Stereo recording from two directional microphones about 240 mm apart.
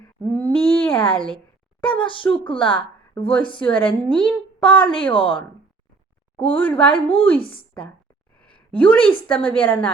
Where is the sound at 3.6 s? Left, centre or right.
Centre.